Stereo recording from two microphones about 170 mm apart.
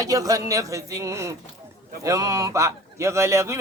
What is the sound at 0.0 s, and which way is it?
A man's voice, 20° right (ahead or behind).